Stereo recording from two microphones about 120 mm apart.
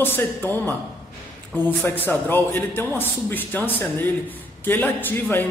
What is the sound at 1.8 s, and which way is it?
Speech, 15° left (ahead or behind).